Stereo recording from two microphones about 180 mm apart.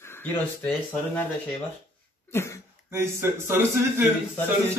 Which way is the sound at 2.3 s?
15° left (ahead or behind).